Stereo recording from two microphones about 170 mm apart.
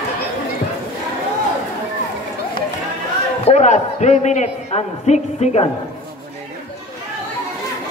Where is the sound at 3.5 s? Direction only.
45° left (ahead or behind).